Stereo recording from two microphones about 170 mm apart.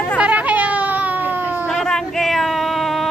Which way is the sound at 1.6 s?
5° left (ahead or behind).